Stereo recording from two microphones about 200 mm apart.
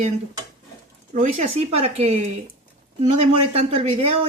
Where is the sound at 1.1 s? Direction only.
35° right (ahead or behind).